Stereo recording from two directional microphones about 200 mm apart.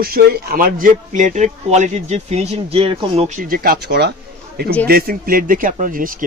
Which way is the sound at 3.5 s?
50° right (ahead or behind).